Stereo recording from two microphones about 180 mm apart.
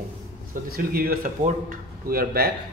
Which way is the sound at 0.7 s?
55° right (ahead or behind).